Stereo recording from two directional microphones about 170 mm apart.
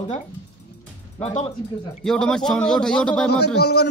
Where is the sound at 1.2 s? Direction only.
40° left (ahead or behind).